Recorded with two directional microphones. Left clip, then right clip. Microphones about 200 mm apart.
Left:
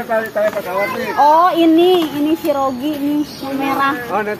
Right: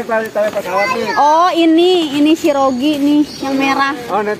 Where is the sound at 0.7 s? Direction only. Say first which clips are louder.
Right 4 dB; 55° right (ahead or behind).